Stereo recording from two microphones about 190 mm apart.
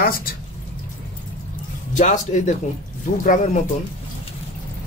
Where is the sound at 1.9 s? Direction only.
40° left (ahead or behind).